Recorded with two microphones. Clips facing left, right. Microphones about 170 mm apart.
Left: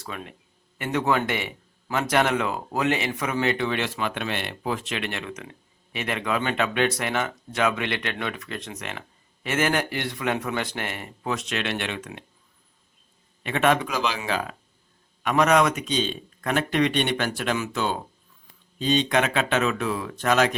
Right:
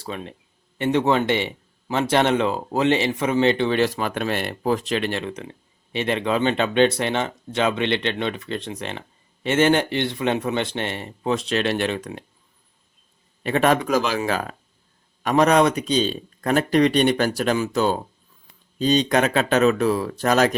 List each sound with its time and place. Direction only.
0.0 s speech: 30° right (ahead or behind)
13.4 s speech: 40° right (ahead or behind)